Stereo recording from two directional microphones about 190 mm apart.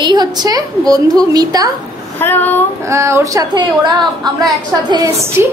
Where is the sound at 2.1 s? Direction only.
10° left (ahead or behind).